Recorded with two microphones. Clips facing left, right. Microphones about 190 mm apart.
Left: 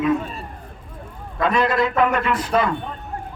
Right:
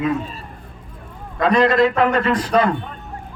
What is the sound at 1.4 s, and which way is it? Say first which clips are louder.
A man's voice: right 4 dB; 35° right (ahead or behind).